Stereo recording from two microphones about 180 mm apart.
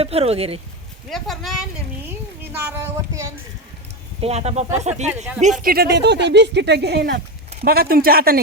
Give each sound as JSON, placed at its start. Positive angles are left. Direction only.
{"t": 0.0, "sound": "speech", "side_deg": -35}
{"t": 1.1, "sound": "speech", "side_deg": 0}
{"t": 2.0, "sound": "a sound", "side_deg": -10}
{"t": 4.2, "sound": "speech", "side_deg": -35}
{"t": 5.0, "sound": "speech", "side_deg": -5}
{"t": 5.4, "sound": "speech", "side_deg": -40}
{"t": 5.7, "sound": "speech", "side_deg": -65}